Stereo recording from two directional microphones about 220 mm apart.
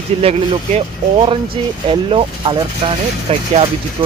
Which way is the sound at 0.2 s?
25° right (ahead or behind).